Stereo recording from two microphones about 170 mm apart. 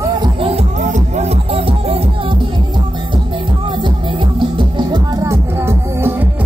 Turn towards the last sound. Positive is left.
turn(degrees=-15)  # may be behind; listen again after turning